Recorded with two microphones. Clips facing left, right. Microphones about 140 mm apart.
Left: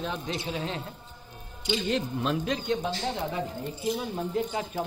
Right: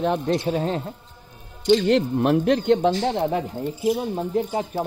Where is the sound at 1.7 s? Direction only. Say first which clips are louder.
Right 11 dB; 70° right (ahead or behind).